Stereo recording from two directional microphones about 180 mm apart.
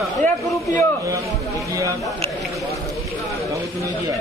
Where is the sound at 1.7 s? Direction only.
15° right (ahead or behind).